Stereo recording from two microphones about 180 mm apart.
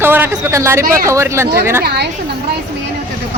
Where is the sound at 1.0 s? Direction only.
15° right (ahead or behind).